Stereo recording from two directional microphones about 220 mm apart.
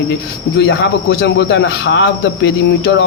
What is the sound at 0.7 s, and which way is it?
Speech, 55° left (ahead or behind).